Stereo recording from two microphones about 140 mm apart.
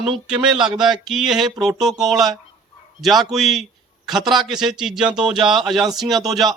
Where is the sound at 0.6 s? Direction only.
5° right (ahead or behind).